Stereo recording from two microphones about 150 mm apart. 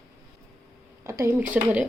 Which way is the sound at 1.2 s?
15° right (ahead or behind).